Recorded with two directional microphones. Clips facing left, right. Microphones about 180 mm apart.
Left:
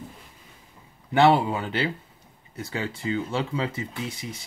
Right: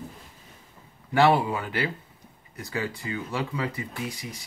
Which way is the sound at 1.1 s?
20° left (ahead or behind).